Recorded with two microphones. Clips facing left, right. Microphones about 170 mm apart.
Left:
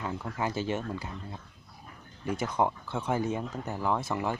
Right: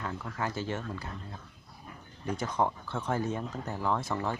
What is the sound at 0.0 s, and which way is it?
Speech, 15° left (ahead or behind).